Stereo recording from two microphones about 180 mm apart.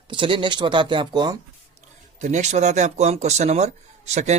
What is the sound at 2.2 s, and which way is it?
Speech, 40° right (ahead or behind).